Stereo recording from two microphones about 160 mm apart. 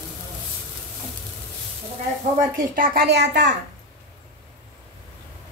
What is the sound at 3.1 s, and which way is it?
Speech, 90° right.